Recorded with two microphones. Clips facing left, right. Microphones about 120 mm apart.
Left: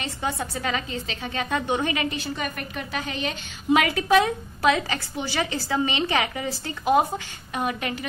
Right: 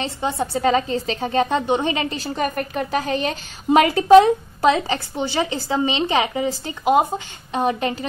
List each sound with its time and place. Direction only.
0.0 s a woman's voice: 25° right (ahead or behind)
7.6 s a woman's voice: 30° right (ahead or behind)